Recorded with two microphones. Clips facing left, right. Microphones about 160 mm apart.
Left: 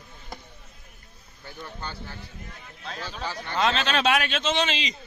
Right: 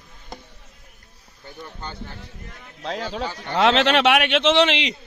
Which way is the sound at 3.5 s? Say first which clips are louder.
Right 7 dB; 75° right (ahead or behind).